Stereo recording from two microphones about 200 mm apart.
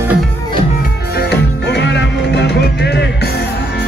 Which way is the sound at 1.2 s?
55° left (ahead or behind).